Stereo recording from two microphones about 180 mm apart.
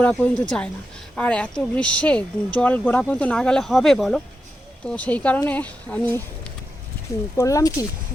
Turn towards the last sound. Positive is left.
turn(degrees=20)  # may be behind; listen again after turning